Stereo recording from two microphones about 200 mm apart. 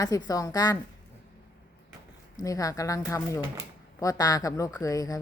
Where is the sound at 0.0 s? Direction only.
15° left (ahead or behind).